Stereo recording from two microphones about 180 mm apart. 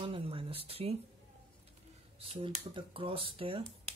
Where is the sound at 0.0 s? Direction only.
30° right (ahead or behind).